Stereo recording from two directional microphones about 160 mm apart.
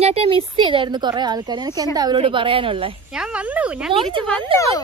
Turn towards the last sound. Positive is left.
turn(degrees=-35)  # may be behind; listen again after turning